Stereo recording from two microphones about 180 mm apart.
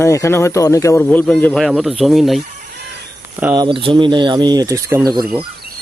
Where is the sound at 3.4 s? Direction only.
15° right (ahead or behind).